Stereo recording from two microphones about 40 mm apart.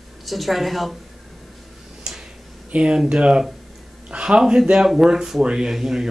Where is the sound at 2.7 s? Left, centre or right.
Right.